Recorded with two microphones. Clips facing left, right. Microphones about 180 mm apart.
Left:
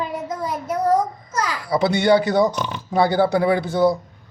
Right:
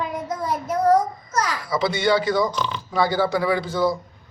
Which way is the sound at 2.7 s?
50° left (ahead or behind).